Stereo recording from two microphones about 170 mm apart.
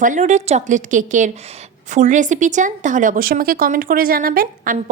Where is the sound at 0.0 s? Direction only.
45° right (ahead or behind).